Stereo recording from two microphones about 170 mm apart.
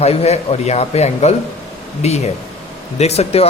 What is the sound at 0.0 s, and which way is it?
Speech, 40° left (ahead or behind).